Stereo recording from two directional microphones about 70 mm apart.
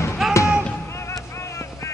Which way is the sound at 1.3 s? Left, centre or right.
Left.